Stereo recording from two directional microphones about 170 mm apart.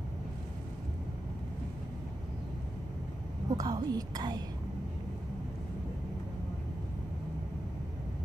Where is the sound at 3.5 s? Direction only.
20° right (ahead or behind).